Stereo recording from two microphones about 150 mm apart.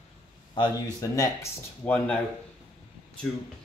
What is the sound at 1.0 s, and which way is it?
Speech, 20° left (ahead or behind).